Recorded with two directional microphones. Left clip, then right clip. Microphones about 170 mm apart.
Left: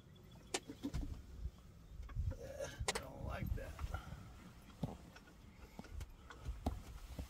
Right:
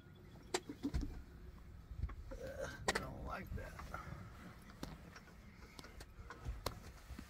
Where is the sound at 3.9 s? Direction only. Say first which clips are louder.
Right 3 dB; 20° right (ahead or behind).